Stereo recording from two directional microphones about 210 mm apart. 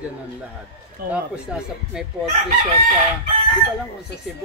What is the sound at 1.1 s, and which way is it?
Speech, 5° right (ahead or behind).